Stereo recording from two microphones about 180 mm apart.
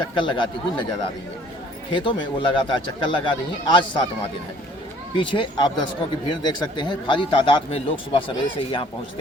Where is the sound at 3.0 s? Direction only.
25° left (ahead or behind).